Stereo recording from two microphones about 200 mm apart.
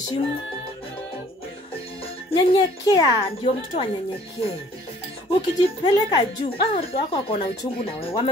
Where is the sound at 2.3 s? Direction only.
20° left (ahead or behind).